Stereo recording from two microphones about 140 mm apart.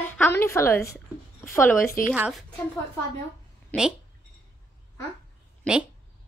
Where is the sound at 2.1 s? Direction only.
5° right (ahead or behind).